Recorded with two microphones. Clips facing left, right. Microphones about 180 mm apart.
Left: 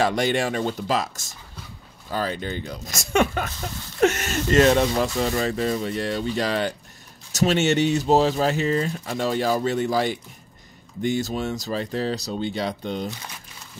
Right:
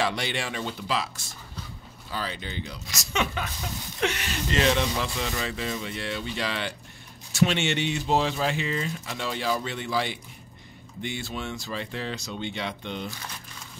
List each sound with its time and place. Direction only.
0.0 s speech: 45° left (ahead or behind)